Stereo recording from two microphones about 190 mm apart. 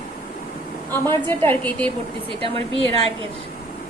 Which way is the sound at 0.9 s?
10° left (ahead or behind).